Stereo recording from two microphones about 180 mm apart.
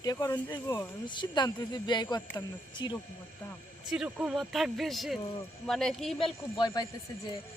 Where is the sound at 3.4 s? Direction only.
10° left (ahead or behind).